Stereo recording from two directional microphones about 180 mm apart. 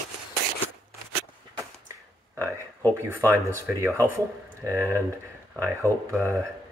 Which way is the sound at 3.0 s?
15° right (ahead or behind).